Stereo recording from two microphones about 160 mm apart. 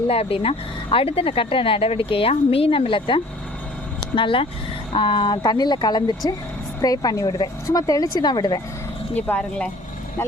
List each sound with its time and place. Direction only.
0.1 s speech: 35° left (ahead or behind)
9.1 s speech: 10° left (ahead or behind)